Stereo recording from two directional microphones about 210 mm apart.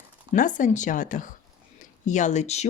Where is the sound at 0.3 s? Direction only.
40° left (ahead or behind).